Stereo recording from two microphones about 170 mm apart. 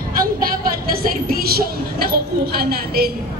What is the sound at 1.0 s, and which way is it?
A woman's voice, 65° right (ahead or behind).